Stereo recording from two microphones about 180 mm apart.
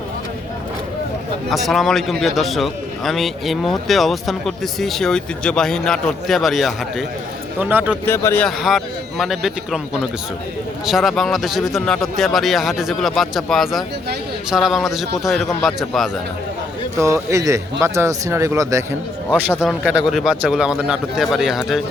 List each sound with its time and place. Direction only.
1.5 s a man's voice: centre (ahead or behind)
8.0 s speech: 15° left (ahead or behind)
8.4 s a man's voice: centre (ahead or behind)
17.0 s speech: 15° right (ahead or behind)
19.5 s a man's voice: centre (ahead or behind)